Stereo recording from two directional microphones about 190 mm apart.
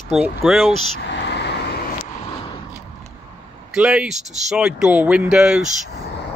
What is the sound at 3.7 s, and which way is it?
Speech, 5° right (ahead or behind).